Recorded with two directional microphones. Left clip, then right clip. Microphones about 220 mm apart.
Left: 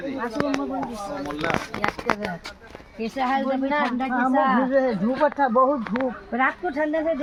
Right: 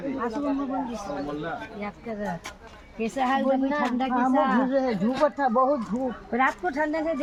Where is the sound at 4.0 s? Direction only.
20° left (ahead or behind).